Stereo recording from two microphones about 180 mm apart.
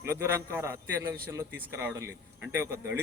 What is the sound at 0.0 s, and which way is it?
A man's voice, 15° right (ahead or behind).